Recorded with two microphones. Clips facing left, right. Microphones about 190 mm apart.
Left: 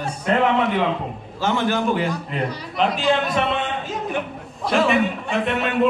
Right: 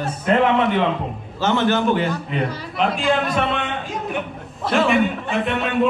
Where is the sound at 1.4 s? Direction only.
Centre (ahead or behind).